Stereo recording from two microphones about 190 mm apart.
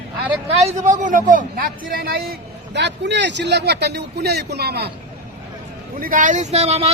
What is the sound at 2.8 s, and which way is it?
Speech, 65° right (ahead or behind).